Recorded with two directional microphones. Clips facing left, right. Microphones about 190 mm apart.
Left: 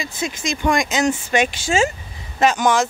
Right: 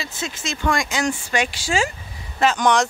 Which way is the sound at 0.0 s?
15° left (ahead or behind).